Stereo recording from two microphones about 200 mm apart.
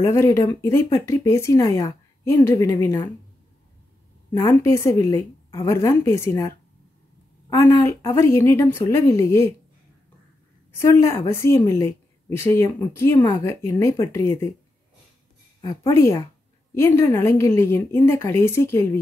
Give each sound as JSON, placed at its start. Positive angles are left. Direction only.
{"t": 0.0, "sound": "speech", "side_deg": 15}
{"t": 4.3, "sound": "speech", "side_deg": 15}
{"t": 10.8, "sound": "speech", "side_deg": 15}
{"t": 15.6, "sound": "speech", "side_deg": 15}